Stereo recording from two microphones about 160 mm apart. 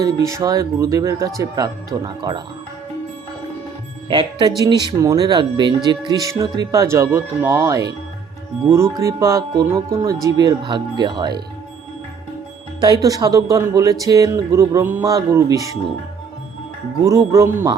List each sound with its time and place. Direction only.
0.0 s speech: 20° right (ahead or behind)
4.1 s speech: 30° right (ahead or behind)
12.8 s speech: 25° right (ahead or behind)
17.1 s speech: 20° right (ahead or behind)